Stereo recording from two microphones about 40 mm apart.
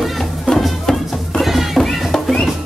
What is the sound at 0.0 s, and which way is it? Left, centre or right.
Music, centre.